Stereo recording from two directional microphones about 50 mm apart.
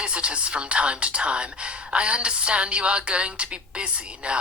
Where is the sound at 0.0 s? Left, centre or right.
Right.